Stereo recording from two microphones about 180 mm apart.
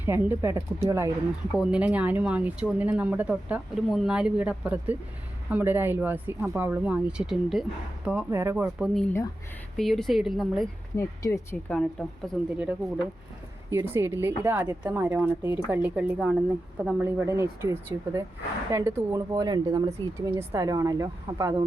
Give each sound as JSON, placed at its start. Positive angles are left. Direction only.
{"t": 0.0, "sound": "speech", "side_deg": -10}
{"t": 8.6, "sound": "a woman's voice", "side_deg": 0}
{"t": 10.9, "sound": "speech", "side_deg": 15}
{"t": 11.8, "sound": "a woman's voice", "side_deg": 5}
{"t": 12.5, "sound": "speech", "side_deg": -5}